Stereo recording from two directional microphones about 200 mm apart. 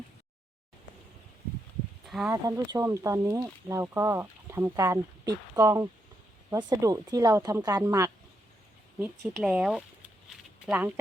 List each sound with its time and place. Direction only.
2.0 s speech: centre (ahead or behind)
2.3 s speech: 15° right (ahead or behind)
9.0 s speech: centre (ahead or behind)
10.2 s a sound: 5° right (ahead or behind)